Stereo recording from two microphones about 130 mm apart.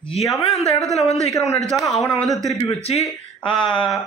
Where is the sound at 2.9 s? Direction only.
45° left (ahead or behind).